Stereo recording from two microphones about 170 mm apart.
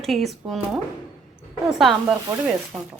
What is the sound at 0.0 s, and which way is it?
Speech, centre (ahead or behind).